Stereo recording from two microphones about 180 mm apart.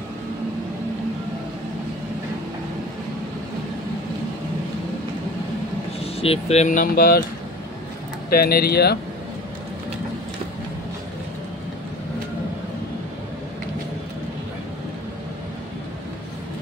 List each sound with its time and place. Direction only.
6.1 s speech: 35° left (ahead or behind); by 7.2 s 55° left (ahead or behind)
8.3 s speech: 55° left (ahead or behind)